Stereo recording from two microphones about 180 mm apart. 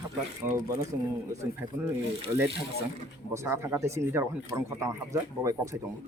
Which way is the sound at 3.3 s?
15° right (ahead or behind).